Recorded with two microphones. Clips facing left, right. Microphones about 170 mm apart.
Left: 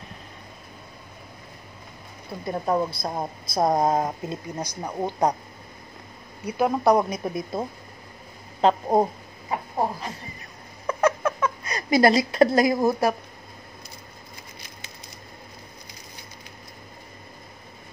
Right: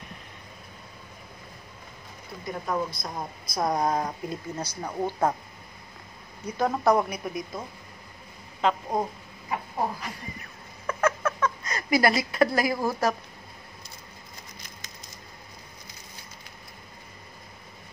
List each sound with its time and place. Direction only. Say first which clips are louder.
2.4 s speech: left 5 dB; 30° left (ahead or behind); by 5.3 s 15° left (ahead or behind)
6.4 s speech: left 3 dB; 10° left (ahead or behind)
7.2 s speech: left 5 dB; 30° left (ahead or behind)
10.9 s a sound: left 4 dB; 15° left (ahead or behind)
11.9 s speech: left 5 dB; 25° left (ahead or behind)